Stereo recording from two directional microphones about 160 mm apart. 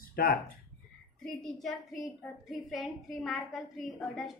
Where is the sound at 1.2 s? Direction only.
Centre (ahead or behind).